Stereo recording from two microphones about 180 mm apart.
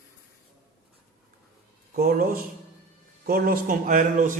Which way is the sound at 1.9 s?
55° right (ahead or behind).